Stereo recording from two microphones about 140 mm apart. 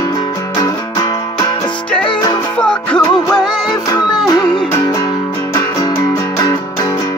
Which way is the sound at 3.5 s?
30° left (ahead or behind).